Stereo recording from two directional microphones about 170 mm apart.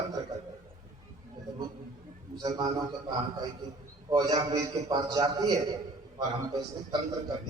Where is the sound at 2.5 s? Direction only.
25° right (ahead or behind).